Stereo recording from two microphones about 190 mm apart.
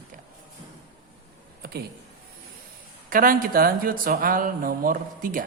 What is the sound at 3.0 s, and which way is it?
Speech, 45° right (ahead or behind).